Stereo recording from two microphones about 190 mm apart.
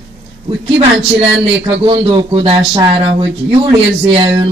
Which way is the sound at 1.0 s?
30° right (ahead or behind).